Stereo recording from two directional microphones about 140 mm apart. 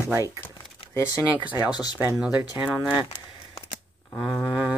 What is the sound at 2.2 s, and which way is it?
Speech, 10° right (ahead or behind).